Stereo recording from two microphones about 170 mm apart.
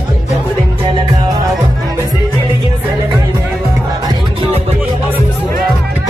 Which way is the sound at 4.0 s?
30° right (ahead or behind).